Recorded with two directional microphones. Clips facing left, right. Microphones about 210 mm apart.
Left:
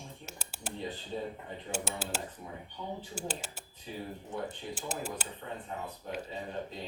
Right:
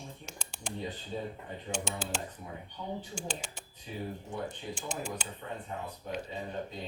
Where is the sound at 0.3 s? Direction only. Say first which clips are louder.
Even; 5° left (ahead or behind).